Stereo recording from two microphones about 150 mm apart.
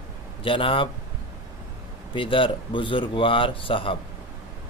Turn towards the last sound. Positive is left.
turn(degrees=35)  # may be behind; listen again after turning